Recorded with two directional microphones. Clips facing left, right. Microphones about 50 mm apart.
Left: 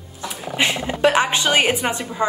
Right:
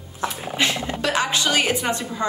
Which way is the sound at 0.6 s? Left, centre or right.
Centre.